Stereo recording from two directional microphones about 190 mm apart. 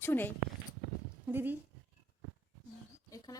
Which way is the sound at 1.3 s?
10° right (ahead or behind).